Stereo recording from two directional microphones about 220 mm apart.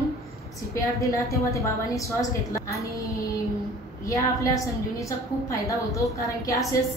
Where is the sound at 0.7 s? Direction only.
15° left (ahead or behind).